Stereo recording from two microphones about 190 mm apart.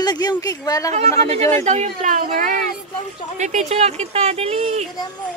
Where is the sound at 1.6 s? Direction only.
40° right (ahead or behind).